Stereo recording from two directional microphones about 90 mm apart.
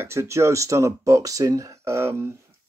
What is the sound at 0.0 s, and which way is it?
Speech, 30° right (ahead or behind).